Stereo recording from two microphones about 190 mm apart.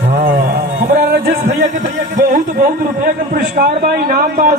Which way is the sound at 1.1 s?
65° right (ahead or behind).